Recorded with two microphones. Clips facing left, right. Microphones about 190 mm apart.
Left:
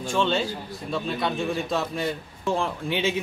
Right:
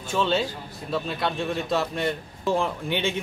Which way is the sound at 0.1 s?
Centre (ahead or behind).